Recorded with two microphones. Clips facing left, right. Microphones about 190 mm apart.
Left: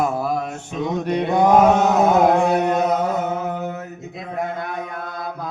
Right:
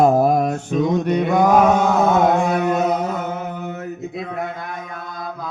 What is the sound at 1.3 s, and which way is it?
Mantra, 25° left (ahead or behind).